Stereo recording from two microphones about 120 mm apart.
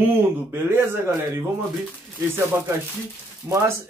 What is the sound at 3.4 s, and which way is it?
Speech, 25° right (ahead or behind).